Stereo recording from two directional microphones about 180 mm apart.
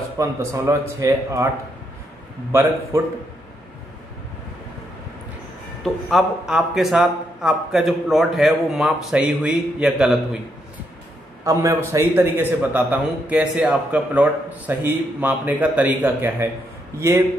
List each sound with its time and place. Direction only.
0.2 s a man's voice: 15° right (ahead or behind)
2.5 s a man's voice: 15° right (ahead or behind)
6.0 s a man's voice: centre (ahead or behind)
11.4 s a man's voice: 15° right (ahead or behind)